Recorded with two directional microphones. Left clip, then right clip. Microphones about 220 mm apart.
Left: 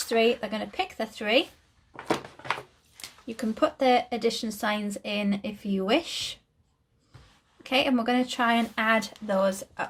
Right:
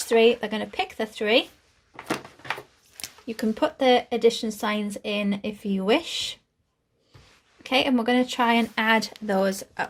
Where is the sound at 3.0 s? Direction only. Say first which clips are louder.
Right 5 dB; 40° right (ahead or behind).